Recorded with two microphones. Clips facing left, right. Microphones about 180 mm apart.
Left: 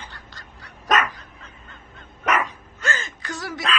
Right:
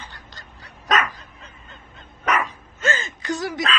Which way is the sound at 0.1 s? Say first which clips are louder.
Even; 20° right (ahead or behind).